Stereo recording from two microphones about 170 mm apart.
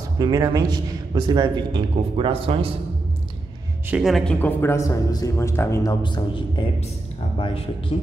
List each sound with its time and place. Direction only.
0.2 s a man's voice: 20° right (ahead or behind)
3.9 s speech: centre (ahead or behind); by 5.9 s 15° left (ahead or behind)
6.0 s speech: 30° left (ahead or behind)